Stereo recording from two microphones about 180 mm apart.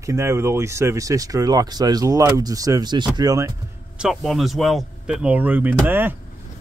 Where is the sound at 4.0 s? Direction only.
Centre (ahead or behind).